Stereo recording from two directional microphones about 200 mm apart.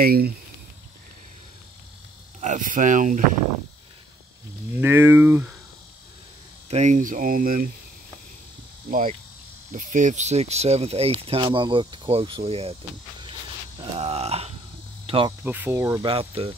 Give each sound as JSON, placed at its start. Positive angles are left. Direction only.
{"t": 0.0, "sound": "speech", "side_deg": -50}
{"t": 2.4, "sound": "speech", "side_deg": -40}
{"t": 4.7, "sound": "speech", "side_deg": -10}
{"t": 6.7, "sound": "speech", "side_deg": -35}
{"t": 9.7, "sound": "speech", "side_deg": -40}
{"t": 13.9, "sound": "speech", "side_deg": -30}
{"t": 15.4, "sound": "speech", "side_deg": -10}
{"t": 16.0, "sound": "speech", "side_deg": -25}